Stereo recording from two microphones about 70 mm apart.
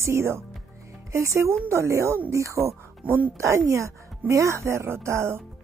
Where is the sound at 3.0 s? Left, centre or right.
Right.